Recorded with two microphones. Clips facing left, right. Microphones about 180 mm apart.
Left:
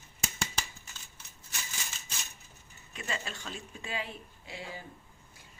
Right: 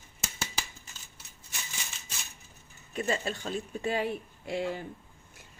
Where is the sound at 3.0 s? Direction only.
40° right (ahead or behind).